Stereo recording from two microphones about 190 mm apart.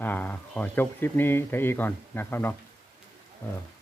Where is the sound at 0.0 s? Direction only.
10° left (ahead or behind).